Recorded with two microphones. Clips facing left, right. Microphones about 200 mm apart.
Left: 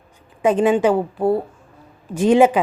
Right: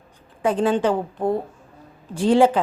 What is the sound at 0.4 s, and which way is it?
A woman's voice, 20° left (ahead or behind).